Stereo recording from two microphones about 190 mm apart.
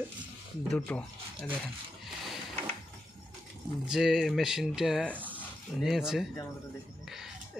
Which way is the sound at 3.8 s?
Centre (ahead or behind).